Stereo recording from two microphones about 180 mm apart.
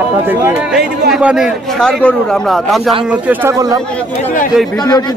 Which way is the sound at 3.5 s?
20° right (ahead or behind).